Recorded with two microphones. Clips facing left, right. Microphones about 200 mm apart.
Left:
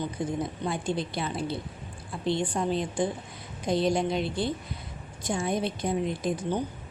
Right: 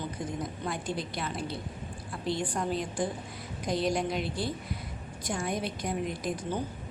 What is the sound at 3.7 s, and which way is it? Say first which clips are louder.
Speech: left 4 dB; 25° left (ahead or behind).